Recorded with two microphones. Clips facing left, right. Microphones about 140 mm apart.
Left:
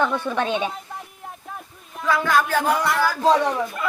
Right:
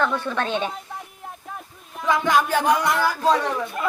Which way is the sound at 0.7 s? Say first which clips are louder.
Even; centre (ahead or behind).